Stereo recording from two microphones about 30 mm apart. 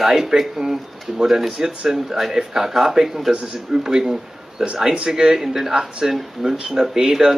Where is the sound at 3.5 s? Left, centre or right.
Right.